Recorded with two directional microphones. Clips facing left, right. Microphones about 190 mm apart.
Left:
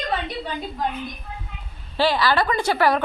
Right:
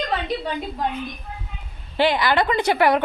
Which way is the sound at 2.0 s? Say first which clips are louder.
Right 1 dB; 20° right (ahead or behind).